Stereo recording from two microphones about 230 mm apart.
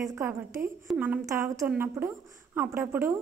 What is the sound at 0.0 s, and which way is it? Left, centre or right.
A woman's voice, centre.